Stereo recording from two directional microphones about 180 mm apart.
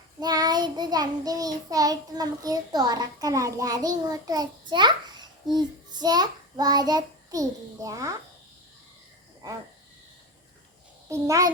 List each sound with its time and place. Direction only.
0.2 s child singing: 20° right (ahead or behind)
11.1 s a child's voice: 15° right (ahead or behind)